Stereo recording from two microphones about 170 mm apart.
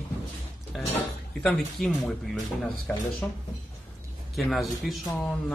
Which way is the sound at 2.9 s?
5° left (ahead or behind).